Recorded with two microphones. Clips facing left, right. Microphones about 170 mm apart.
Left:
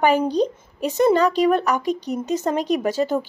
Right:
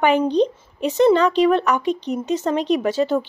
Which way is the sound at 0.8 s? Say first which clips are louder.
Right 2 dB; 40° left (ahead or behind).